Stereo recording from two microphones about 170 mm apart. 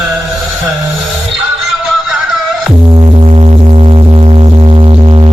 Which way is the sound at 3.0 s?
35° right (ahead or behind).